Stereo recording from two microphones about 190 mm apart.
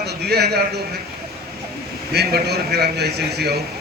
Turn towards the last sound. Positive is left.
turn(degrees=-60)  # may be behind; listen again after turning